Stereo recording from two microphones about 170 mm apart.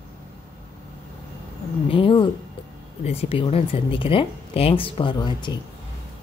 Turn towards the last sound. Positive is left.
turn(degrees=25)  # may be behind; listen again after turning